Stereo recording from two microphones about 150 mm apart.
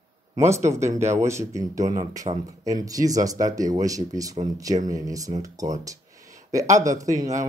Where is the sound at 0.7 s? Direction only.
20° right (ahead or behind).